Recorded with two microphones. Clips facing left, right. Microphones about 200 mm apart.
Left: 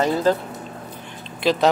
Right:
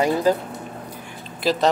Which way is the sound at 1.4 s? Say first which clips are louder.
Left 2 dB; centre (ahead or behind).